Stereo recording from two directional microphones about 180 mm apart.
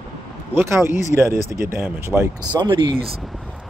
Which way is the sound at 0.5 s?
15° right (ahead or behind).